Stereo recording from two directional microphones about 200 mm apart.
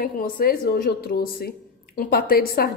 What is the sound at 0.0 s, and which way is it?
A woman's voice, 45° left (ahead or behind).